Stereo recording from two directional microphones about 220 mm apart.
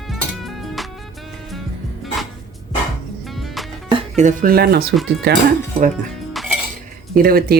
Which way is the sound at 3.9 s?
30° right (ahead or behind).